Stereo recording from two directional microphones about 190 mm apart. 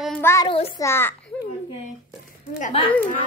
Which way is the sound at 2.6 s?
35° left (ahead or behind).